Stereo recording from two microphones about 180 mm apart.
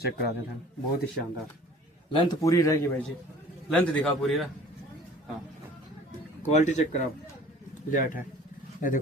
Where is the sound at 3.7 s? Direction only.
5° left (ahead or behind).